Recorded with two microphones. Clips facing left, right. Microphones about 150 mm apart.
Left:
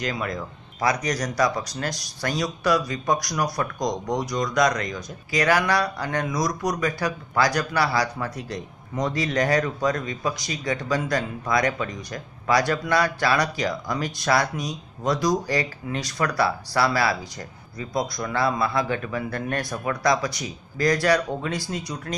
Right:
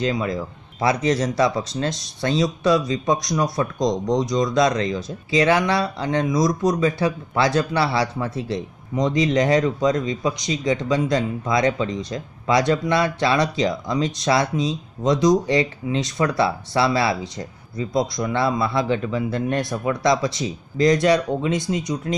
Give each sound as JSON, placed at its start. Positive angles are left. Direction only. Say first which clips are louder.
{"t": 0.0, "sound": "speech", "louder": "right 5 dB", "side_deg": -25}